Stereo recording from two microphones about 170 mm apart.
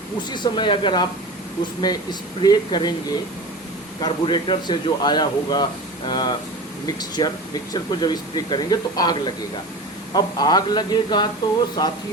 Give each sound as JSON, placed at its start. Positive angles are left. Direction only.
{"t": 0.3, "sound": "a man's voice", "side_deg": 25}
{"t": 4.0, "sound": "a man's voice", "side_deg": 25}